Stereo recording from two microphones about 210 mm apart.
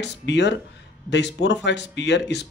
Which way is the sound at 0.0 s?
55° left (ahead or behind).